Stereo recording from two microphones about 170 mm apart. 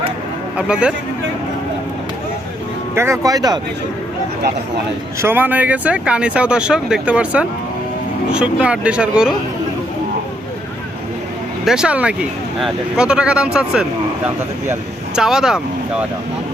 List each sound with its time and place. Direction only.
0.5 s speech: 5° right (ahead or behind)
2.9 s speech: 15° right (ahead or behind)
5.2 s speech: 10° right (ahead or behind)
11.6 s speech: 5° right (ahead or behind)